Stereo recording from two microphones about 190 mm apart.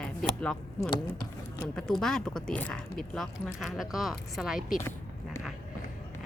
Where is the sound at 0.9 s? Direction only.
20° left (ahead or behind).